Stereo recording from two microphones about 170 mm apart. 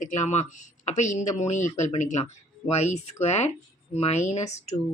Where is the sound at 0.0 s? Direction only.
45° left (ahead or behind).